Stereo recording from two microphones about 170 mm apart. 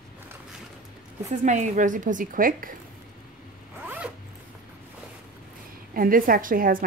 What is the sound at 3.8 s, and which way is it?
Zipper, 10° right (ahead or behind).